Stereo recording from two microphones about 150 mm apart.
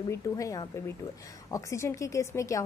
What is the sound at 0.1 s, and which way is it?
A woman's voice, 20° left (ahead or behind).